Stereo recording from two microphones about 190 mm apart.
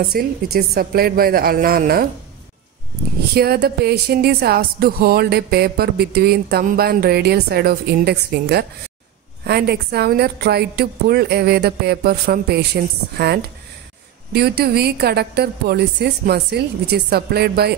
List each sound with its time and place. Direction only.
0.1 s a woman's voice: 55° right (ahead or behind)
3.3 s a woman's voice: 55° right (ahead or behind)
14.3 s a woman's voice: 55° right (ahead or behind)